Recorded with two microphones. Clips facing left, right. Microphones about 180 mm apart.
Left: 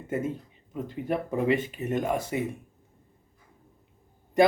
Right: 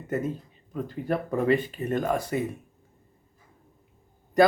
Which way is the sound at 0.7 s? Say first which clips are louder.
Right 1 dB; 20° left (ahead or behind).